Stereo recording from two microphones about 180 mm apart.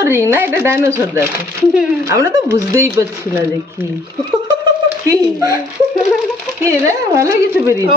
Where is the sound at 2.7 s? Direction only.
15° right (ahead or behind).